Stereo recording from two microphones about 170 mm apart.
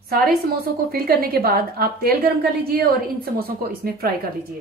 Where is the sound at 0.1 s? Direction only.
60° right (ahead or behind).